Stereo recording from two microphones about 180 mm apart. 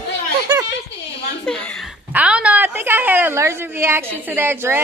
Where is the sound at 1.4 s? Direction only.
5° left (ahead or behind).